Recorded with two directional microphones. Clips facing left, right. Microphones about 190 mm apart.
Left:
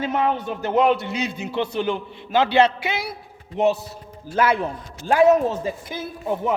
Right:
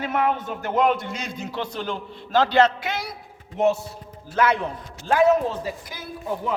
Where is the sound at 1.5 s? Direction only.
25° left (ahead or behind).